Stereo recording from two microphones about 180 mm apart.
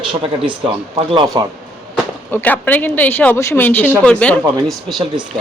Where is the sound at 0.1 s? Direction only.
30° right (ahead or behind).